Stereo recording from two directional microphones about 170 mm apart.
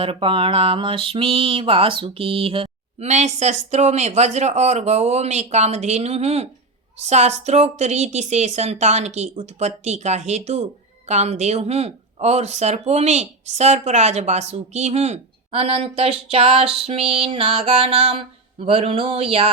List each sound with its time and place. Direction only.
0.0 s speech: 30° right (ahead or behind)